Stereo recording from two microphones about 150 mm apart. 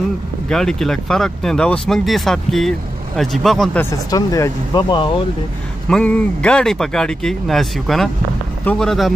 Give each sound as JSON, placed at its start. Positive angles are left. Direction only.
{"t": 0.5, "sound": "speech", "side_deg": 5}
{"t": 4.1, "sound": "speech", "side_deg": 25}
{"t": 5.9, "sound": "speech", "side_deg": 5}